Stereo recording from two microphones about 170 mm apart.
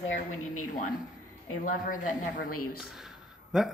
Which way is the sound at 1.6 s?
55° left (ahead or behind).